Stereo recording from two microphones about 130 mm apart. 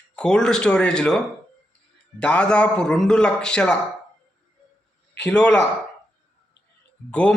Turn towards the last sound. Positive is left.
turn(degrees=10)  # may be behind; listen again after turning